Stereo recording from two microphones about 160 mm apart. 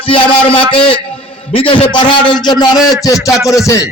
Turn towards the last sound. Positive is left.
turn(degrees=20)  # may be behind; listen again after turning